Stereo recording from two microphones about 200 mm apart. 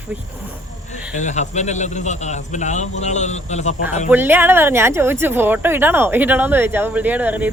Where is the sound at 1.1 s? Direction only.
35° left (ahead or behind).